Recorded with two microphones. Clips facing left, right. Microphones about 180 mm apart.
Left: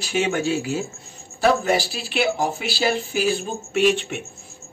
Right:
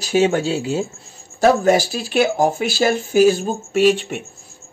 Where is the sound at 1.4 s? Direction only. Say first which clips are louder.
Right 5 dB; 45° right (ahead or behind).